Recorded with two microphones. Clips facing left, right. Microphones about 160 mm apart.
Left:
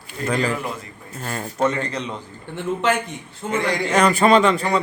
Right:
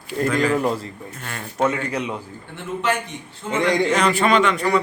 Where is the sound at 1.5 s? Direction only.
10° right (ahead or behind).